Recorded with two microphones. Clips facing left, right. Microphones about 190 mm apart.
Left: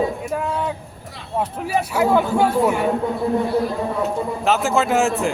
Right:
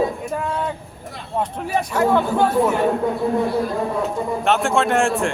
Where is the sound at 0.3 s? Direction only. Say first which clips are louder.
Left 1 dB; centre (ahead or behind).